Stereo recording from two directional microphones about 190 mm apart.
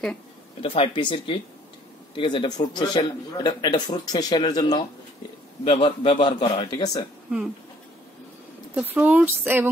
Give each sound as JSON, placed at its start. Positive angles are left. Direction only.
{"t": 0.6, "sound": "a man's voice", "side_deg": 25}
{"t": 8.9, "sound": "speech", "side_deg": -10}